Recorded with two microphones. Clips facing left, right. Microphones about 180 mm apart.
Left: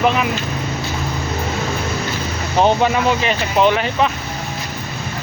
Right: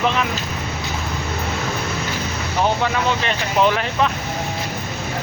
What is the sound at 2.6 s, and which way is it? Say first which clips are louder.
Speech: left 5 dB; 20° left (ahead or behind).